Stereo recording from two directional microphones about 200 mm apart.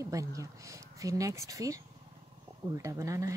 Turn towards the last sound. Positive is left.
turn(degrees=-15)  # may be behind; listen again after turning